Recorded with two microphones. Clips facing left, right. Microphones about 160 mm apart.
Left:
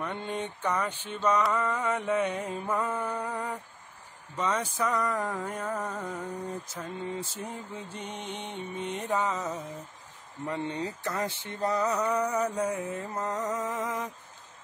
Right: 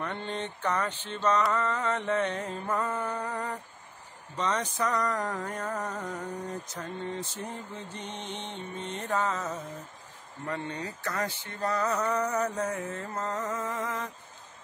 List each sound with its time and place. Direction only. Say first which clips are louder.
0.0 s mantra: left 1 dB; 10° left (ahead or behind)
10.4 s a sound: left 3 dB; 20° left (ahead or behind)
12.0 s mantra: left 1 dB; 10° left (ahead or behind)